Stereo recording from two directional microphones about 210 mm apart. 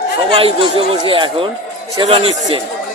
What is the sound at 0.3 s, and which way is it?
A man's voice, 25° right (ahead or behind).